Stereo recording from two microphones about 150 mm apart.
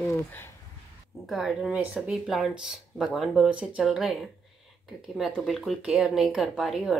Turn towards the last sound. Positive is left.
turn(degrees=0)  # may be behind; listen again after turning